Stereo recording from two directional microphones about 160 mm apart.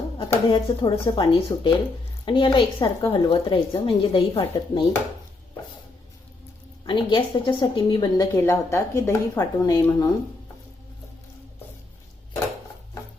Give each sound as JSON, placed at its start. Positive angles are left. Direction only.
{"t": 0.2, "sound": "speech", "side_deg": 30}
{"t": 2.7, "sound": "a woman's voice", "side_deg": 20}
{"t": 3.2, "sound": "speech", "side_deg": 35}
{"t": 6.8, "sound": "speech", "side_deg": 30}